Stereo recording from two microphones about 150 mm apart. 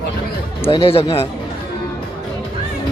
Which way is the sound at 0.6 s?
40° left (ahead or behind).